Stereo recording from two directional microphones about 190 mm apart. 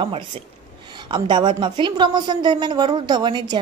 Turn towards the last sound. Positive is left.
turn(degrees=-25)  # may be behind; listen again after turning